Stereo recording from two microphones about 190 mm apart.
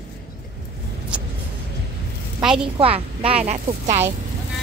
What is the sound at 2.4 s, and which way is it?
Speech, 5° right (ahead or behind).